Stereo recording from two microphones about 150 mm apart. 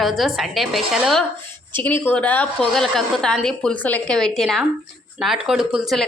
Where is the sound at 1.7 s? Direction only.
15° left (ahead or behind).